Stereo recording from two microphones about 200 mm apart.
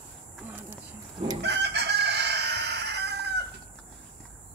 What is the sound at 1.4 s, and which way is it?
Chicken, 55° right (ahead or behind).